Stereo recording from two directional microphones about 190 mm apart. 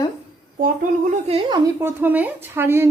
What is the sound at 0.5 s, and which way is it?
Speech, 50° right (ahead or behind).